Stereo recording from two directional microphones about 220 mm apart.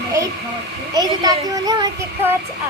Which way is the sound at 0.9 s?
15° right (ahead or behind).